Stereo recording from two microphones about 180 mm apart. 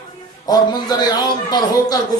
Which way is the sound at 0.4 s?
20° left (ahead or behind).